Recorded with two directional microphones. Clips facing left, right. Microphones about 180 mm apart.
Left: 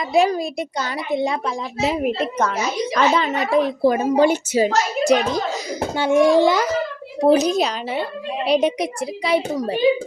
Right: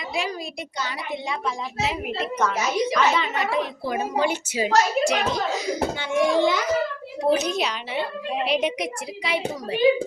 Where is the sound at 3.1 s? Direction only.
40° left (ahead or behind).